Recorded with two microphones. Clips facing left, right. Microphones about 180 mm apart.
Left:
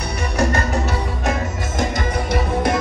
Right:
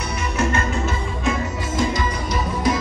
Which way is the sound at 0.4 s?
40° left (ahead or behind).